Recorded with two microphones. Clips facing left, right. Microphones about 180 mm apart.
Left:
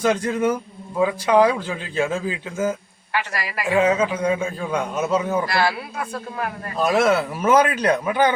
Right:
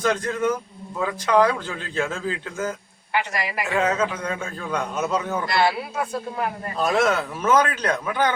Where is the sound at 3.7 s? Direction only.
10° left (ahead or behind).